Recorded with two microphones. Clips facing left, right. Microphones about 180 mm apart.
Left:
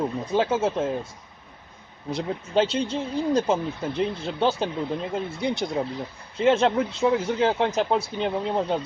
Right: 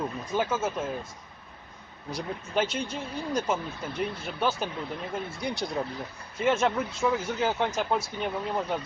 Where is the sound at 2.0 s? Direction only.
25° left (ahead or behind).